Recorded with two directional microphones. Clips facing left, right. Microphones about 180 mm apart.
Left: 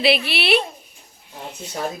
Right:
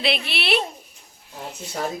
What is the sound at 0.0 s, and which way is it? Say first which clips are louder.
Speech: left 6 dB; 5° left (ahead or behind).